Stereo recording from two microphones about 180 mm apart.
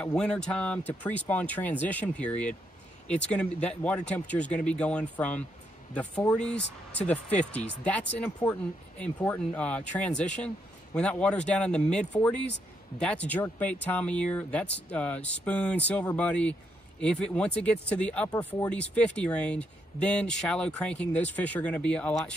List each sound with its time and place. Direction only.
0.0 s speech: 5° left (ahead or behind)
3.6 s speech: 5° left (ahead or behind)